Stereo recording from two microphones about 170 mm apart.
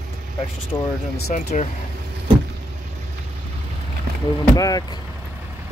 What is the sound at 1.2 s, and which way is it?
Speech, 50° left (ahead or behind).